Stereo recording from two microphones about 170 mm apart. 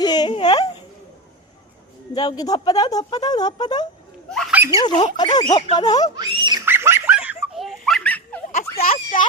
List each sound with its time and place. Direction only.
0.0 s a sound: 25° left (ahead or behind)
2.1 s speech: 25° left (ahead or behind)
4.5 s speech: 15° right (ahead or behind)
4.8 s speech: 25° left (ahead or behind)
6.1 s speech: 25° right (ahead or behind)
6.7 s laughter: 15° right (ahead or behind); by 8.4 s 10° left (ahead or behind)
8.8 s a sound: 55° left (ahead or behind)